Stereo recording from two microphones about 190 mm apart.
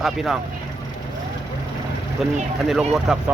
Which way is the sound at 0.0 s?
Centre (ahead or behind).